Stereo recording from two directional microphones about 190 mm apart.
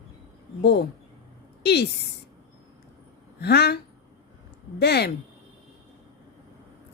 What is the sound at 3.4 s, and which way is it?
Speech, 60° left (ahead or behind).